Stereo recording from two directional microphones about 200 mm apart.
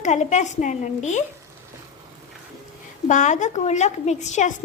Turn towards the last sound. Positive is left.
turn(degrees=35)  # may be behind; listen again after turning